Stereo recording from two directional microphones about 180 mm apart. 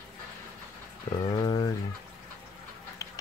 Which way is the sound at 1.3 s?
25° left (ahead or behind).